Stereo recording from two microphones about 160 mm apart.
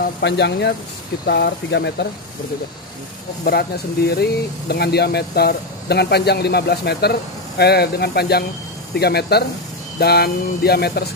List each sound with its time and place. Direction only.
0.0 s speech: 90° left
3.4 s speech: 80° left